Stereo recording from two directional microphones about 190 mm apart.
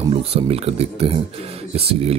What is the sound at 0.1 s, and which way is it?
Speech, 30° right (ahead or behind).